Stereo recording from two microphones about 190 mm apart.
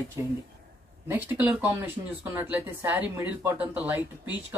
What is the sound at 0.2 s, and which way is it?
Speech, 15° right (ahead or behind).